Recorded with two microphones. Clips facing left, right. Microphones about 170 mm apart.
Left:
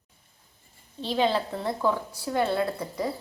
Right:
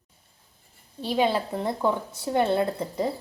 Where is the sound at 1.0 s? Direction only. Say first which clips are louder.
Right 1 dB; 10° right (ahead or behind).